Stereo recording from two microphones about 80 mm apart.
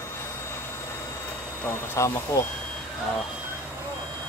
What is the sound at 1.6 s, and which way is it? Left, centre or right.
Speech, left.